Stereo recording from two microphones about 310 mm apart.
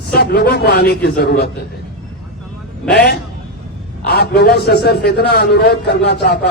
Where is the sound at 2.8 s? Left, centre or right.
Left.